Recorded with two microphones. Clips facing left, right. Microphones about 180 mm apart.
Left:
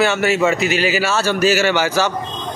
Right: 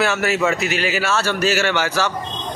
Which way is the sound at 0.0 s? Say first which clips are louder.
Left 3 dB; centre (ahead or behind).